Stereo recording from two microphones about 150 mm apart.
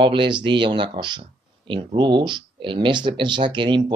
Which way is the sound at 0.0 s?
35° right (ahead or behind).